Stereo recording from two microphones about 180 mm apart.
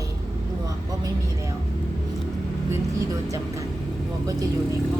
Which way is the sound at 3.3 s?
15° right (ahead or behind).